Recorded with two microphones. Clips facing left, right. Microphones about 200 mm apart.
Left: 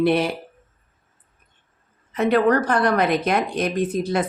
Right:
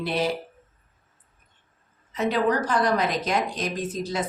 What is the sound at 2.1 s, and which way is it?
Speech, 60° left (ahead or behind).